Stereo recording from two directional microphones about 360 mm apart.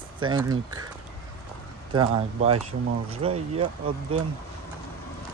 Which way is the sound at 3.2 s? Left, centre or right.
Centre.